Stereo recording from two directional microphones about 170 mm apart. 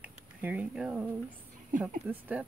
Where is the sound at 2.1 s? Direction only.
10° right (ahead or behind).